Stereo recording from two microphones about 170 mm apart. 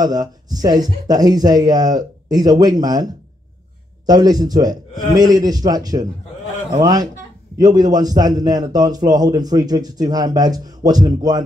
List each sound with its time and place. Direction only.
0.0 s a man's voice: 20° right (ahead or behind)